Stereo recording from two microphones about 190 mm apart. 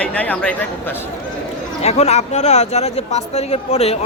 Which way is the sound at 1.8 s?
35° left (ahead or behind).